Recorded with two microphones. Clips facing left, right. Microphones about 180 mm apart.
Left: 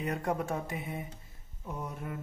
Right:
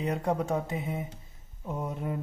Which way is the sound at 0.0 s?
20° right (ahead or behind).